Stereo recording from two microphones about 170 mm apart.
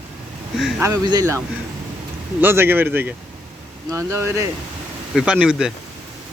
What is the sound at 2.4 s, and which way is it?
Speech, 15° right (ahead or behind).